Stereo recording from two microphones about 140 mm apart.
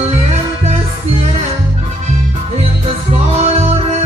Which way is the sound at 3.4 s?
45° right (ahead or behind).